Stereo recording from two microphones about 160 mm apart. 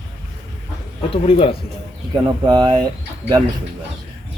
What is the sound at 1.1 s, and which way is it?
Speech, 35° left (ahead or behind).